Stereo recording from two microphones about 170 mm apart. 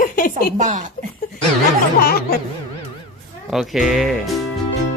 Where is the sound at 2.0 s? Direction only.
65° left (ahead or behind).